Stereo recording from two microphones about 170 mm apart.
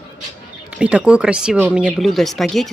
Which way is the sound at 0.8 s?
5° right (ahead or behind).